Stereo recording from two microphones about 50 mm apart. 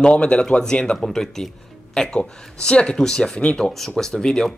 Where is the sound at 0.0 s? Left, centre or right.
Left.